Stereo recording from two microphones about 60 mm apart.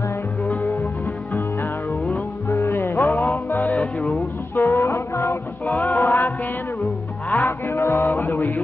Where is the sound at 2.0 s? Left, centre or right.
Left.